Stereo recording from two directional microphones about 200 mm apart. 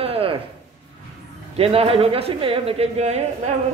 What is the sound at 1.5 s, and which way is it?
Speech, 30° right (ahead or behind).